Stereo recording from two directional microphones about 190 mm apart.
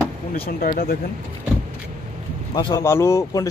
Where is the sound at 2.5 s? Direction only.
20° left (ahead or behind).